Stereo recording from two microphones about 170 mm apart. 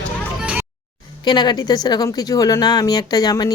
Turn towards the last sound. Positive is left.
turn(degrees=20)  # may be behind; listen again after turning